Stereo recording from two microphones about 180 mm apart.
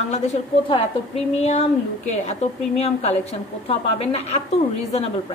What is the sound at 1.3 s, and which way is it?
A woman's voice, 35° left (ahead or behind).